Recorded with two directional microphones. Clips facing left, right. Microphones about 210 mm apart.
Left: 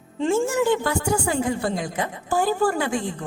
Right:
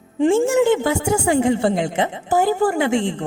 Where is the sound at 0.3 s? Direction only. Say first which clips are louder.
Right 3 dB; 25° right (ahead or behind).